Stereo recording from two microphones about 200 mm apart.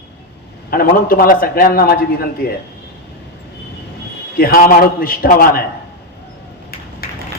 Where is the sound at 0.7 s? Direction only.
45° left (ahead or behind).